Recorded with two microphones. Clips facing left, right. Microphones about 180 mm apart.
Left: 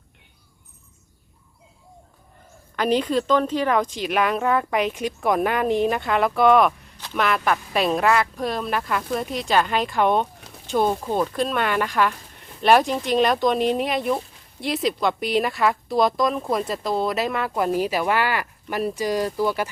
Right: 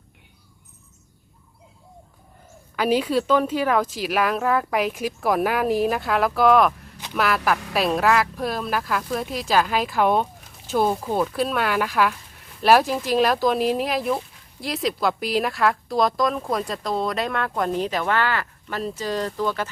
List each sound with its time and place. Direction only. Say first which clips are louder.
2.7 s speech: even; 5° right (ahead or behind); by 19.7 s 10° left (ahead or behind)